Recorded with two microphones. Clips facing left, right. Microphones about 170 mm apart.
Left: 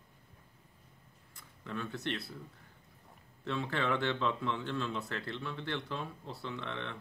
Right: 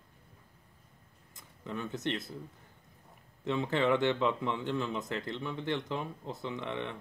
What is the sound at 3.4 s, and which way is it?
Speech, 20° right (ahead or behind).